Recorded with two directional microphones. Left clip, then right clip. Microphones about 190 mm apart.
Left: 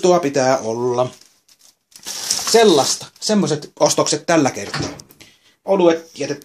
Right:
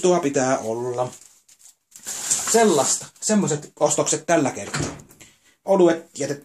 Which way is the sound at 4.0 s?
30° left (ahead or behind).